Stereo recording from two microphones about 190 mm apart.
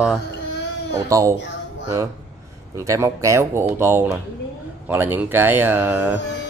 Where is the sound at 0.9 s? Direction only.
15° right (ahead or behind).